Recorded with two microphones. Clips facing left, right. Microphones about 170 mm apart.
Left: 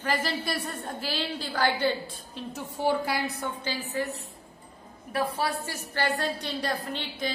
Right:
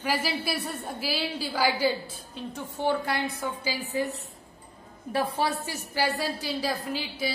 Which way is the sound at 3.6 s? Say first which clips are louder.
Right 2 dB; 10° right (ahead or behind).